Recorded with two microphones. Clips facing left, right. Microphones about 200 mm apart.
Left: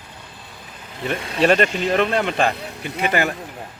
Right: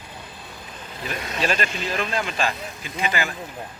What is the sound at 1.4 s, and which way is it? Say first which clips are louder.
Speech: left 9 dB; 60° left (ahead or behind).